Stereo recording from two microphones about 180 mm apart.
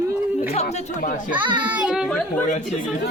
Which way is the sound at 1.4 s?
25° right (ahead or behind).